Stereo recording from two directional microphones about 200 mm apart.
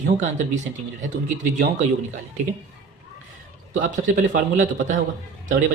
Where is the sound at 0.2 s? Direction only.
35° right (ahead or behind).